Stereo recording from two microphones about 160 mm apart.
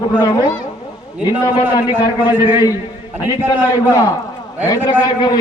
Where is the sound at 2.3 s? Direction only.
10° right (ahead or behind).